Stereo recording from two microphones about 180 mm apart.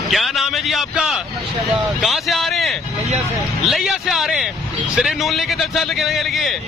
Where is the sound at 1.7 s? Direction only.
Centre (ahead or behind).